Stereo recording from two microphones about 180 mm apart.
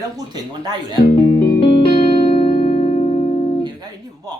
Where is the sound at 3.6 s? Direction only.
20° right (ahead or behind).